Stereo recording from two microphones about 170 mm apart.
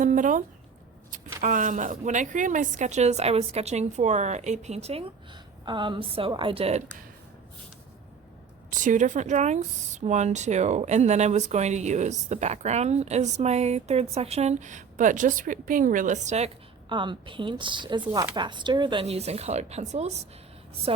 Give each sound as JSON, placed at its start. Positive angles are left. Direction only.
{"t": 0.0, "sound": "a woman's voice", "side_deg": -50}
{"t": 8.7, "sound": "speech", "side_deg": -50}
{"t": 16.9, "sound": "a woman's voice", "side_deg": -30}